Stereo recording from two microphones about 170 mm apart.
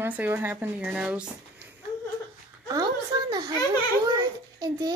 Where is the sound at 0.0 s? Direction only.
10° right (ahead or behind).